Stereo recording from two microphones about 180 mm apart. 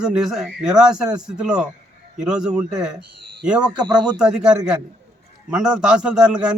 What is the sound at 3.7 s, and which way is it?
Speech, 20° right (ahead or behind).